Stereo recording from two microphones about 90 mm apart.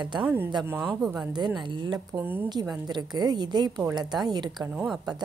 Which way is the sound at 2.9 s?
50° right (ahead or behind).